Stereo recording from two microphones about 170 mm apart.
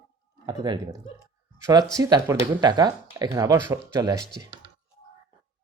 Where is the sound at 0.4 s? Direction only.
25° right (ahead or behind).